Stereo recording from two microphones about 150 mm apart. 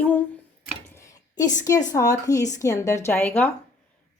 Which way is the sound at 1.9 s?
20° left (ahead or behind).